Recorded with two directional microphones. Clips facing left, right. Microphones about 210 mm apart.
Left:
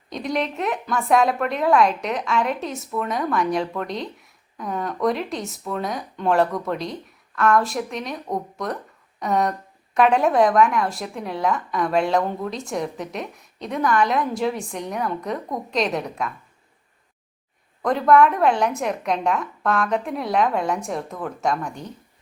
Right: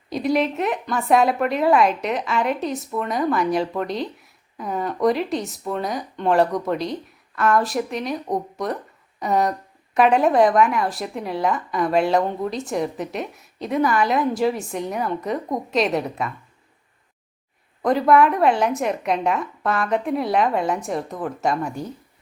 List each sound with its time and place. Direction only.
0.1 s a woman's voice: 5° right (ahead or behind)
17.8 s a woman's voice: 5° right (ahead or behind)